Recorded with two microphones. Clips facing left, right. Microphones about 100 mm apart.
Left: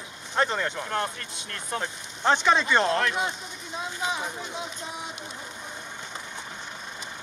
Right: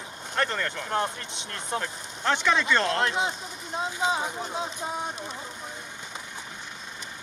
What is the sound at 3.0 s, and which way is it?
Speech, 25° right (ahead or behind).